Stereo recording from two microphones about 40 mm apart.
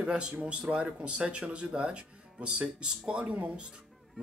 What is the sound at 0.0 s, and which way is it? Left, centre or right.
Speech, right.